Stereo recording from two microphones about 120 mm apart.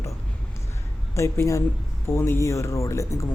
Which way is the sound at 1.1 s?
25° left (ahead or behind).